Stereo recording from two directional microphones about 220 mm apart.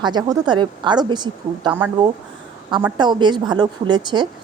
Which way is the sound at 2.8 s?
20° right (ahead or behind).